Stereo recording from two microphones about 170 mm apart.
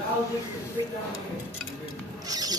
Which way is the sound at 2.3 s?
20° right (ahead or behind).